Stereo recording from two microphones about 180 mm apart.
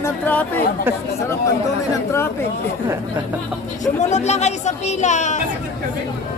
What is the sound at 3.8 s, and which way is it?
Speech, 40° left (ahead or behind).